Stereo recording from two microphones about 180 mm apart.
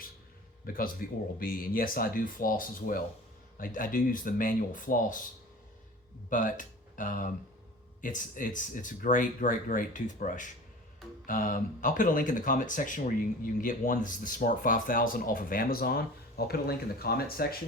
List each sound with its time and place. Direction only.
0.6 s speech: 50° left (ahead or behind)
6.3 s speech: 45° left (ahead or behind)